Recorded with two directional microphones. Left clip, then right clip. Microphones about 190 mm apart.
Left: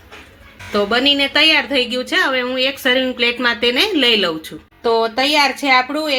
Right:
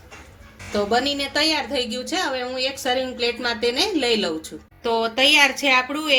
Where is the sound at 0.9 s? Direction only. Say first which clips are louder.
Left 8 dB; 30° left (ahead or behind).